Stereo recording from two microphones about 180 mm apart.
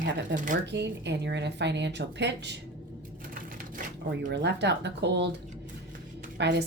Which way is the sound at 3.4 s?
50° right (ahead or behind).